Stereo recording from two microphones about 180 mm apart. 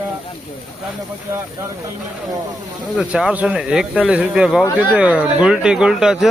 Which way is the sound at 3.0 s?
5° right (ahead or behind).